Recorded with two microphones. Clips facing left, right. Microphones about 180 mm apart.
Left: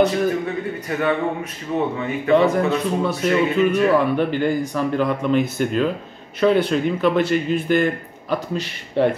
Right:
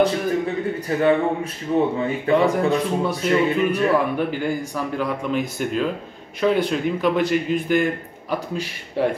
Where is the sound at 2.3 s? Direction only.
10° right (ahead or behind).